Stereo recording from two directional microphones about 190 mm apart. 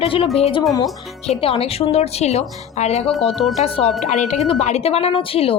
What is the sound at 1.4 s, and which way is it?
A woman's voice, 30° left (ahead or behind).